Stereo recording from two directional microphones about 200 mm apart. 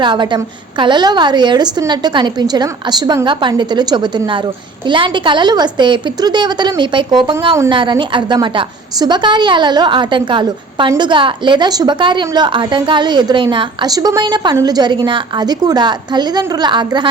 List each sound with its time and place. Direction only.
0.0 s a woman's voice: 25° right (ahead or behind)